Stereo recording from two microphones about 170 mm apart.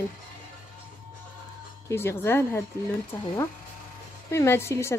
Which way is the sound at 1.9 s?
15° left (ahead or behind).